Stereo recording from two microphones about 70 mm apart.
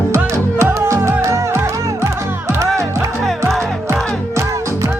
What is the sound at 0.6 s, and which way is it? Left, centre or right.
Music, right.